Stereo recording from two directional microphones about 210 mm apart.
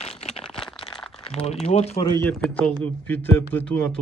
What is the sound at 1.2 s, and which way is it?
Speech, 30° left (ahead or behind).